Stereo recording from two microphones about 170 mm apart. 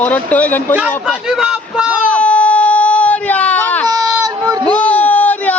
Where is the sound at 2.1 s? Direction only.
10° left (ahead or behind).